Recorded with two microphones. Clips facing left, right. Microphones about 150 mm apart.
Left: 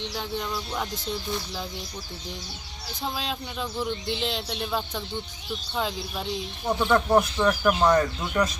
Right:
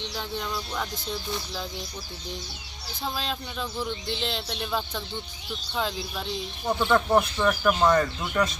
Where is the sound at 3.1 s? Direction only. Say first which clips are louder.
Even; 5° left (ahead or behind).